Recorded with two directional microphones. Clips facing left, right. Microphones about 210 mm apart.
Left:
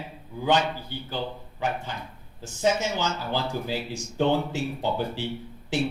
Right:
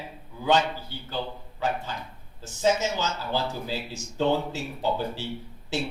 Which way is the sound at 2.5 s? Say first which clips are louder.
Even; 15° left (ahead or behind).